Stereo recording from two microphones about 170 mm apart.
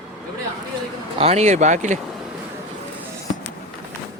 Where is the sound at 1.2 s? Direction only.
40° right (ahead or behind).